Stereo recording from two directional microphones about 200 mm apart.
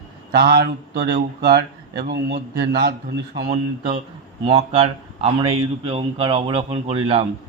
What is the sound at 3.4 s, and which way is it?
Speech, 30° right (ahead or behind).